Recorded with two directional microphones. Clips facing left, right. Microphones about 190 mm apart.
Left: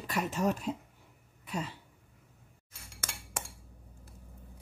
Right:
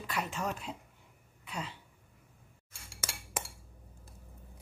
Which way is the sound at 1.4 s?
45° left (ahead or behind).